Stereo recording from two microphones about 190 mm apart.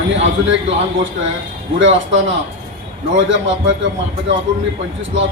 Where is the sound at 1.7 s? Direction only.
80° right.